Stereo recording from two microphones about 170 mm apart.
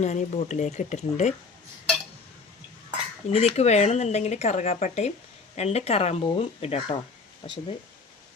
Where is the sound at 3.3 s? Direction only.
35° left (ahead or behind).